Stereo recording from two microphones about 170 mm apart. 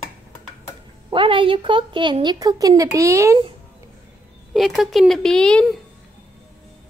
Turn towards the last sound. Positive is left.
turn(degrees=5)  # may be behind; listen again after turning